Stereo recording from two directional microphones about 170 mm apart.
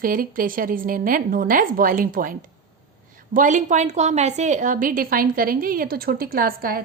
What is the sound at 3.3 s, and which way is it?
A woman's voice, 50° right (ahead or behind).